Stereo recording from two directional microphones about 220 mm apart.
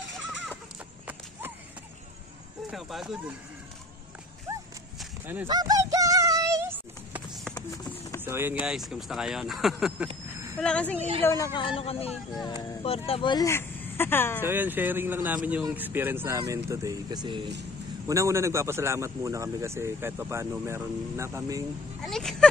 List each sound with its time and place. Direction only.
2.7 s speech: centre (ahead or behind)
4.9 s a sound: 10° right (ahead or behind)
7.7 s a sound: 15° left (ahead or behind)
8.2 s speech: 10° right (ahead or behind); by 11.0 s 5° left (ahead or behind)
11.0 s a woman's voice: 25° right (ahead or behind)
11.2 s speech: 15° left (ahead or behind)
14.4 s a man's voice: 10° right (ahead or behind)
22.0 s speech: centre (ahead or behind)